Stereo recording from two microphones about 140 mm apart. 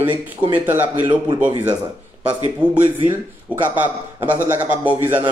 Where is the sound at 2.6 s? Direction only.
10° right (ahead or behind).